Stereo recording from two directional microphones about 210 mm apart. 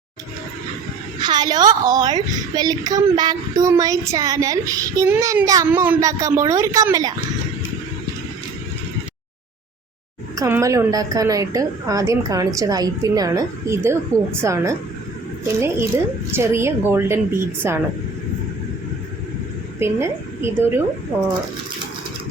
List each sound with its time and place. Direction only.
1.2 s a woman's voice: 20° right (ahead or behind)
10.3 s a woman's voice: 15° right (ahead or behind)
14.1 s a woman's voice: 10° left (ahead or behind)
14.4 s a woman's voice: 15° right (ahead or behind)
16.3 s a woman's voice: 10° right (ahead or behind)
19.8 s a woman's voice: 10° right (ahead or behind)